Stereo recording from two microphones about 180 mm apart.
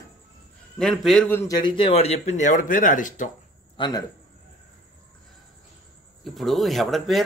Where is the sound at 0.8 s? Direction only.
Centre (ahead or behind); by 3.3 s 45° left (ahead or behind).